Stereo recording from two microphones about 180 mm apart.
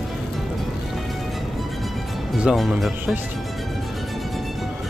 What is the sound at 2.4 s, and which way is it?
Speech, 5° right (ahead or behind).